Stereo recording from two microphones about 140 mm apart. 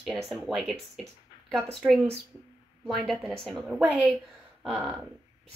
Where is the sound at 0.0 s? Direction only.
Centre (ahead or behind).